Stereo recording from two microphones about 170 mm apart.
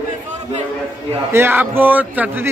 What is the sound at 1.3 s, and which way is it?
A man's voice, 15° right (ahead or behind).